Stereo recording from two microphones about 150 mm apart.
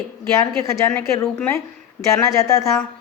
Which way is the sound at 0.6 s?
20° left (ahead or behind).